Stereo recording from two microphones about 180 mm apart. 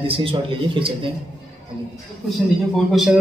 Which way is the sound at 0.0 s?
30° right (ahead or behind).